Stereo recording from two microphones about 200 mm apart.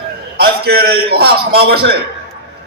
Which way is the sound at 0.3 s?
50° right (ahead or behind).